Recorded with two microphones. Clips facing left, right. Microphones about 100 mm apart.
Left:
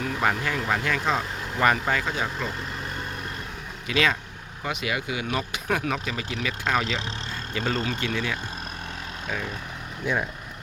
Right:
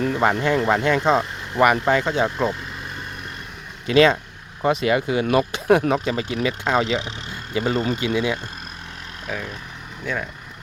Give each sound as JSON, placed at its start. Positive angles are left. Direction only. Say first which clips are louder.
{"t": 0.0, "sound": "speech", "louder": "right 6 dB", "side_deg": -30}
{"t": 1.9, "sound": "speech", "louder": "right 7 dB", "side_deg": -20}
{"t": 3.8, "sound": "speech", "louder": "right 9 dB", "side_deg": -30}
{"t": 9.2, "sound": "speech", "louder": "right 2 dB", "side_deg": 0}